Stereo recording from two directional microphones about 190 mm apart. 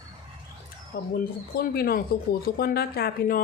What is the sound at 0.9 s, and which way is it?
Speech, 55° left (ahead or behind).